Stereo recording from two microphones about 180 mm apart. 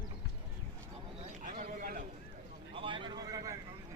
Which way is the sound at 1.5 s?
50° right (ahead or behind).